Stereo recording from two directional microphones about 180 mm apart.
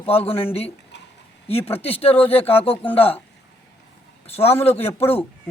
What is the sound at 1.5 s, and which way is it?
Speech, 35° left (ahead or behind).